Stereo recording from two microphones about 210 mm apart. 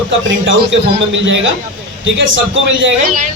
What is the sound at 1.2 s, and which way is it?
Speech, 60° right (ahead or behind).